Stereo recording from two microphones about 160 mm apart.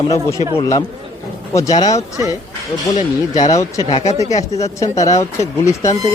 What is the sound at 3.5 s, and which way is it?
Speech, 20° left (ahead or behind).